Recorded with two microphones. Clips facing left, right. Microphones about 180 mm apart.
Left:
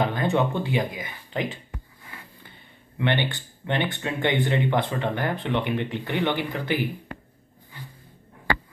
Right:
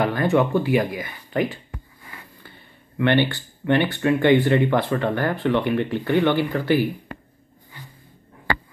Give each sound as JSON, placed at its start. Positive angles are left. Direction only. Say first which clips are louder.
{"t": 0.1, "sound": "speech", "louder": "right 5 dB", "side_deg": 20}
{"t": 3.0, "sound": "speech", "louder": "right 6 dB", "side_deg": 20}